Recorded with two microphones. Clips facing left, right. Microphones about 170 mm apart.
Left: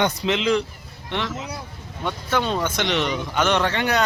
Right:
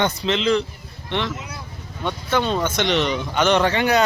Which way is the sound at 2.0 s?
5° left (ahead or behind).